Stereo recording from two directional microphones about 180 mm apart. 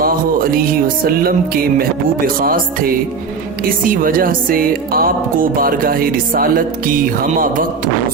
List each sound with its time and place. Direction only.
1.0 s speech: 50° right (ahead or behind)